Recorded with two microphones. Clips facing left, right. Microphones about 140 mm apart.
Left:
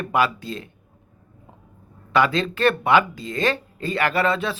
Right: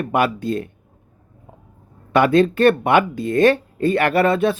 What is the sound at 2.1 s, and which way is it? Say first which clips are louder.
Speech: right 6 dB; 55° right (ahead or behind).